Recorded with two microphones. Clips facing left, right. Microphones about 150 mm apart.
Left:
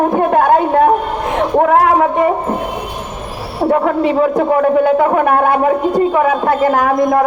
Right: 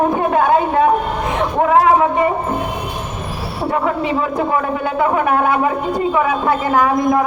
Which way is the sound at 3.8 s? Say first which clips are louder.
Left 5 dB; 50° left (ahead or behind).